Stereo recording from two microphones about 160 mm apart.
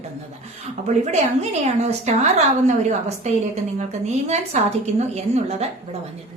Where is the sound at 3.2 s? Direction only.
45° right (ahead or behind).